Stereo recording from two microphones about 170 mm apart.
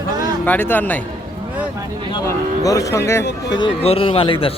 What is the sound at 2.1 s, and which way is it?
Speech, 20° left (ahead or behind).